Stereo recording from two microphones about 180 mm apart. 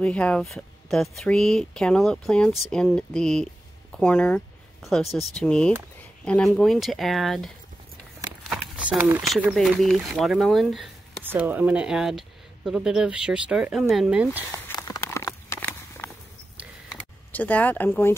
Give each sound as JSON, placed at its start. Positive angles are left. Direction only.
{"t": 0.0, "sound": "speech", "side_deg": 5}
{"t": 14.8, "sound": "a sound", "side_deg": 20}
{"t": 17.3, "sound": "speech", "side_deg": 10}